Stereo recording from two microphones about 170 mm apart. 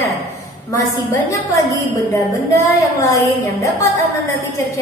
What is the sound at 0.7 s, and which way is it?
A woman's voice, 20° left (ahead or behind).